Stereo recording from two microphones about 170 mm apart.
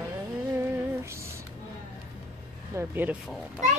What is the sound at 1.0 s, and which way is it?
Music, 15° right (ahead or behind).